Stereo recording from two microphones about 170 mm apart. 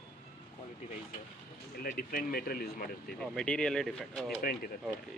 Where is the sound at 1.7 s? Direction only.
55° left (ahead or behind).